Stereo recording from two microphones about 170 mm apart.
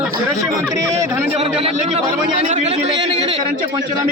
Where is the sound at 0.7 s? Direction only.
20° right (ahead or behind).